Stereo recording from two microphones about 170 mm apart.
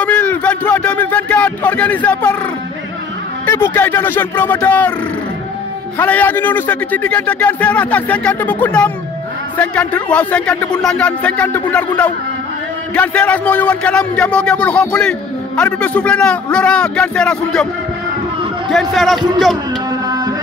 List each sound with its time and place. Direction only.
0.0 s a sound: 10° left (ahead or behind)
3.4 s speech: 15° left (ahead or behind)
5.9 s speech: 10° left (ahead or behind)
12.9 s speech: 5° left (ahead or behind)
18.7 s a man's voice: centre (ahead or behind)
19.9 s a sound: 25° right (ahead or behind)